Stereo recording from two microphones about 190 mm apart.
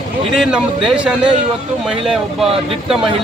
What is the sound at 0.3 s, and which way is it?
Speech, 5° right (ahead or behind).